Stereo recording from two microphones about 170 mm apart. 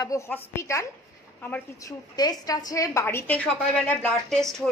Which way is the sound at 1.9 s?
20° left (ahead or behind).